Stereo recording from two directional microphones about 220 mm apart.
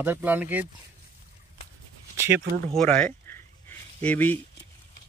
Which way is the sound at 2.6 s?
5° left (ahead or behind).